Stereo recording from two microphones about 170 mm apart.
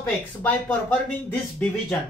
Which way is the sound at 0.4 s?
10° left (ahead or behind).